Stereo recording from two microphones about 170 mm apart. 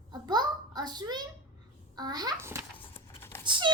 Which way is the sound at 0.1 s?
25° right (ahead or behind).